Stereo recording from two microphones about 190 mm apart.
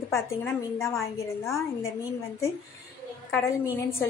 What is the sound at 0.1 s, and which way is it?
A woman's voice, 15° left (ahead or behind).